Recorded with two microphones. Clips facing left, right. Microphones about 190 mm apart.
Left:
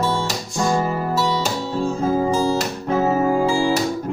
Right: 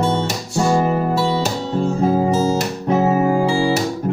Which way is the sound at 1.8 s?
25° right (ahead or behind).